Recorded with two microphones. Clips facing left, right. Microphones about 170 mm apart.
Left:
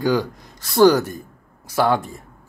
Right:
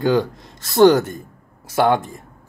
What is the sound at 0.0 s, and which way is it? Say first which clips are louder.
Speech: right 2 dB; 25° right (ahead or behind).